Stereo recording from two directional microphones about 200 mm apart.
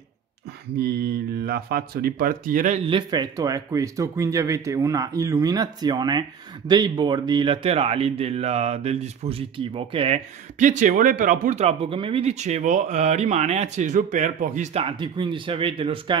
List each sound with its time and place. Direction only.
1.4 s speech: 50° right (ahead or behind)
2.9 s speech: 20° right (ahead or behind)